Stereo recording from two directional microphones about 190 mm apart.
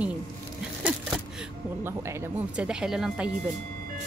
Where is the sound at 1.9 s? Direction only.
15° right (ahead or behind).